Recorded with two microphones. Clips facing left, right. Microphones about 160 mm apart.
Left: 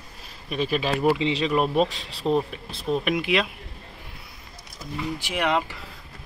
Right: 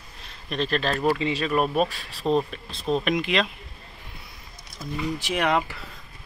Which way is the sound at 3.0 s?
10° left (ahead or behind).